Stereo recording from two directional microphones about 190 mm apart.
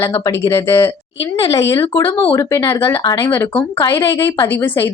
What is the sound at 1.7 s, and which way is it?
Speech, 25° left (ahead or behind).